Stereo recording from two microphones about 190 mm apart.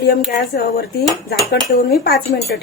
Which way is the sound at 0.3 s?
60° left (ahead or behind).